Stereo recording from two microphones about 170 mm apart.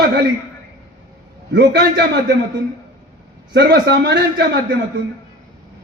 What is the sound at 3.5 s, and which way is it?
Speech, 80° right.